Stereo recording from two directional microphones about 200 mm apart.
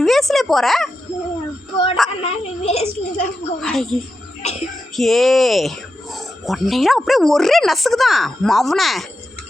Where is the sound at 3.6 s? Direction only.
Centre (ahead or behind).